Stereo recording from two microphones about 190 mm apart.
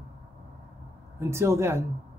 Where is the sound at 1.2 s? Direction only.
15° right (ahead or behind).